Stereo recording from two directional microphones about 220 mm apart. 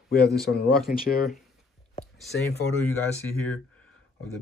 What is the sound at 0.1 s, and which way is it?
Speech, 45° left (ahead or behind).